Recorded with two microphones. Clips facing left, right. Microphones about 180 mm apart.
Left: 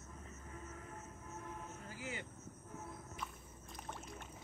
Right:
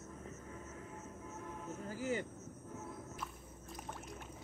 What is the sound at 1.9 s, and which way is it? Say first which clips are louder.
Vehicle: right 10 dB; 40° right (ahead or behind).